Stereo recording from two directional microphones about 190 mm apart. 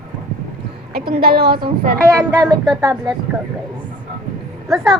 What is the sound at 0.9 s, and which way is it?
Speech, 55° right (ahead or behind).